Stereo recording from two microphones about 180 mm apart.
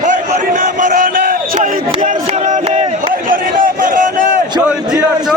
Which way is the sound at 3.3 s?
50° right (ahead or behind).